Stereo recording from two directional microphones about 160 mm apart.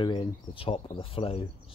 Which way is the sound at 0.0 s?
30° left (ahead or behind).